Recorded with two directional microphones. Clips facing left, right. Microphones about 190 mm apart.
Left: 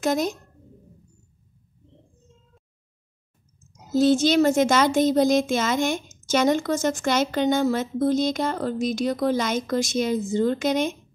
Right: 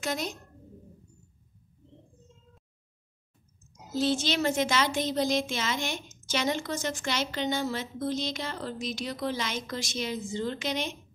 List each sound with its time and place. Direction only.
0.0 s speech: 45° left (ahead or behind)
3.9 s speech: 45° left (ahead or behind)